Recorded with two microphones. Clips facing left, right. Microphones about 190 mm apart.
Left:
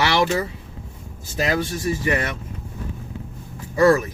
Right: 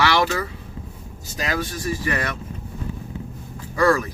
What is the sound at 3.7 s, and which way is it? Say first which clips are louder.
Speech: left 3 dB; 20° left (ahead or behind).